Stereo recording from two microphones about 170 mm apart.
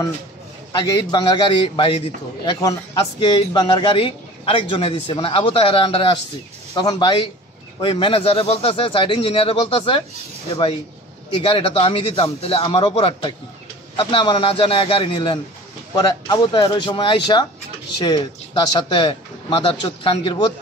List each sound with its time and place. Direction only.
0.7 s a man's voice: 25° left (ahead or behind)
11.3 s a man's voice: 30° left (ahead or behind)